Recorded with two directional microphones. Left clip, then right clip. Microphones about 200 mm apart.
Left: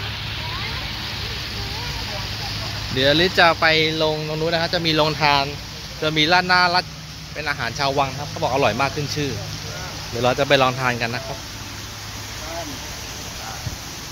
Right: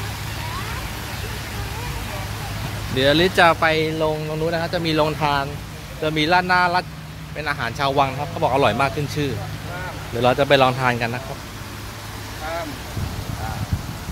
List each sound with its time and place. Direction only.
3.0 s speech: centre (ahead or behind)
5.2 s speech: 20° left (ahead or behind)
6.0 s speech: 5° left (ahead or behind)